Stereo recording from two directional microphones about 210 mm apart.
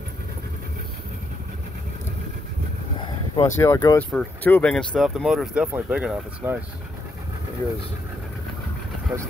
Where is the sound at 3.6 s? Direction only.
15° left (ahead or behind); by 6.6 s 5° right (ahead or behind).